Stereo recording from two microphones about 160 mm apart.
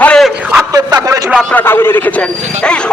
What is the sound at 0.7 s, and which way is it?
Speech, 25° right (ahead or behind).